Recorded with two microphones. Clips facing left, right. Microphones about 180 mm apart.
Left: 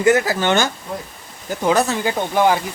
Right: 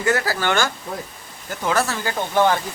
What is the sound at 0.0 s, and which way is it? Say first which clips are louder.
Speech: left 5 dB; 20° left (ahead or behind).